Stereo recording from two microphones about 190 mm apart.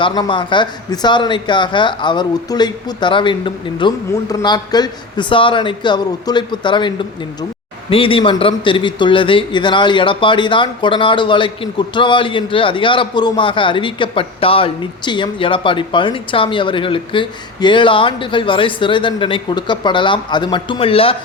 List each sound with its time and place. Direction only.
0.0 s a man's voice: 25° left (ahead or behind)